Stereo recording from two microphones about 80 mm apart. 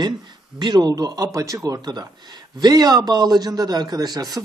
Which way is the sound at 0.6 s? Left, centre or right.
Right.